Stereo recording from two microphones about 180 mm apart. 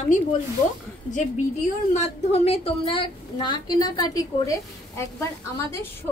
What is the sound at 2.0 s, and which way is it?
A woman's voice, 35° left (ahead or behind).